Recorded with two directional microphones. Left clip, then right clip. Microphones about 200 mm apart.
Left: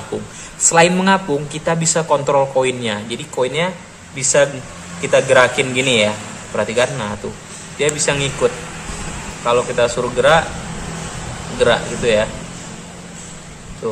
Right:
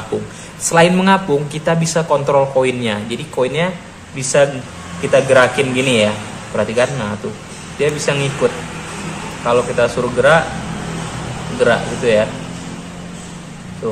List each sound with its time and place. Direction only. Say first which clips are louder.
0.1 s a woman's voice: right 3 dB; 10° left (ahead or behind)
11.6 s a woman's voice: right 1 dB; 15° left (ahead or behind)